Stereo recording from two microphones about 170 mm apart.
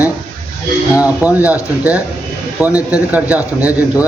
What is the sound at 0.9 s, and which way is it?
A man's voice, 10° right (ahead or behind).